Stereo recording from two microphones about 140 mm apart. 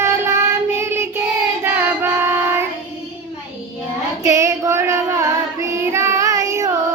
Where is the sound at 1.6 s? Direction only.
15° right (ahead or behind).